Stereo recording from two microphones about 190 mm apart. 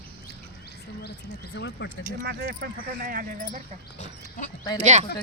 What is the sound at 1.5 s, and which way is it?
Speech, 65° left (ahead or behind).